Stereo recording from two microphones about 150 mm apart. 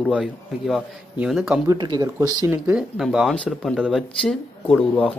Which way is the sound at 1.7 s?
25° right (ahead or behind).